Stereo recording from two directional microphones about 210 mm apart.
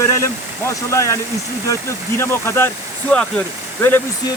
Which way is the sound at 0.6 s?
15° left (ahead or behind).